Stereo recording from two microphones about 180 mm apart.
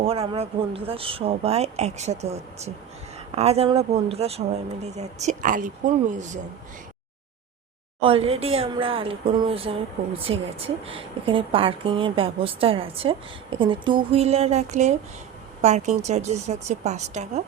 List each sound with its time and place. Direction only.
0.0 s a woman's voice: 35° right (ahead or behind)
8.0 s speech: 30° right (ahead or behind)